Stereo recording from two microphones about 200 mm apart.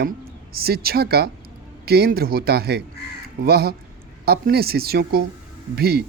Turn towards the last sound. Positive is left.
turn(degrees=-50)  # may be behind; listen again after turning